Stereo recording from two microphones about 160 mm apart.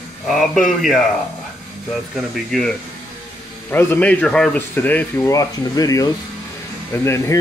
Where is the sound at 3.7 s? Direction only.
10° left (ahead or behind).